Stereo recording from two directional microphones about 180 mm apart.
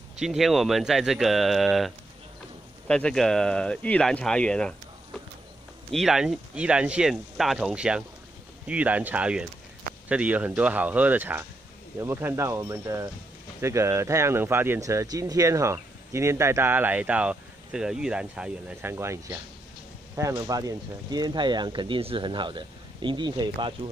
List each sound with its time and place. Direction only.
0.2 s speech: centre (ahead or behind); by 23.7 s 25° right (ahead or behind)